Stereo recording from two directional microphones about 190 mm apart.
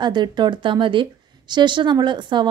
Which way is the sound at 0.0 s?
25° right (ahead or behind).